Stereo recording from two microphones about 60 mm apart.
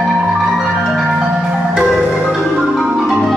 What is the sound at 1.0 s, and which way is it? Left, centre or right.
Marimba, centre.